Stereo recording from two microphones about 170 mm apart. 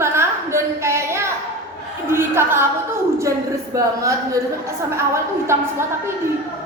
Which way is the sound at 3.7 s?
20° right (ahead or behind).